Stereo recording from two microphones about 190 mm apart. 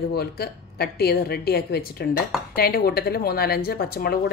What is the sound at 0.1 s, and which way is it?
A woman's voice, 55° left (ahead or behind).